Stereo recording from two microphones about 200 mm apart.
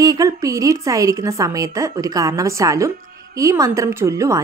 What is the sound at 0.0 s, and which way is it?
A woman's voice, 15° right (ahead or behind).